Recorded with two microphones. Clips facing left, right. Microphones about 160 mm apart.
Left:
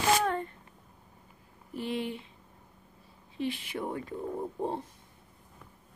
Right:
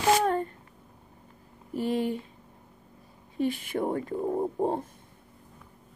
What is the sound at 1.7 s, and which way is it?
Speech, 40° right (ahead or behind).